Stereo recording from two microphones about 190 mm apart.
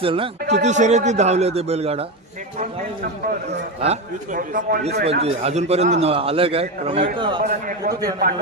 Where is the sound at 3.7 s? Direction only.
40° right (ahead or behind); by 5.0 s 55° right (ahead or behind).